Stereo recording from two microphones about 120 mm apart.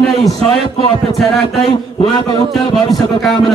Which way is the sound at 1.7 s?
35° left (ahead or behind).